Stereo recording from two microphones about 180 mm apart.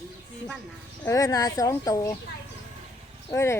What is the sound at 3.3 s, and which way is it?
Speech, 15° left (ahead or behind).